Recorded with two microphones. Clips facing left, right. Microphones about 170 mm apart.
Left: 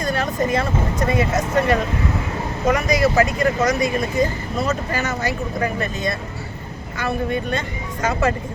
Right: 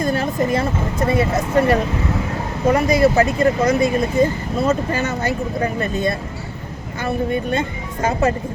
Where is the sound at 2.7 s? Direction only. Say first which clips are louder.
Right 4 dB; 30° right (ahead or behind).